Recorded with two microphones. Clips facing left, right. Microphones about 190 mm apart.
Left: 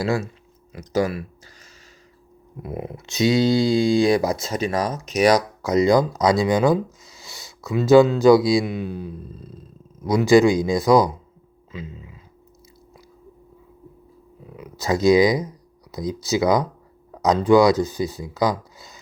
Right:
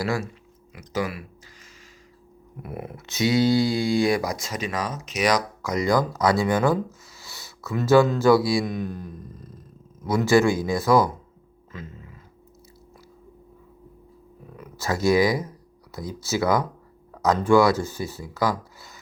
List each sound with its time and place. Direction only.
0.0 s speech: 25° left (ahead or behind)
0.7 s speech: 40° left (ahead or behind)
2.6 s speech: 20° left (ahead or behind)
9.4 s purr: 85° left
10.0 s speech: 15° left (ahead or behind)
11.7 s a sound: 15° left (ahead or behind)
14.4 s speech: 15° left (ahead or behind)